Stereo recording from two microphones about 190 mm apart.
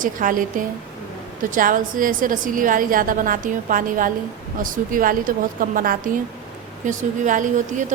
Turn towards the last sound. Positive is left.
turn(degrees=-40)  # may be behind; listen again after turning